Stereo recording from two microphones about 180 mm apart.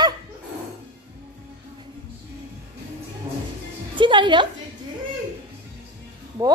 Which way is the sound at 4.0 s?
25° right (ahead or behind).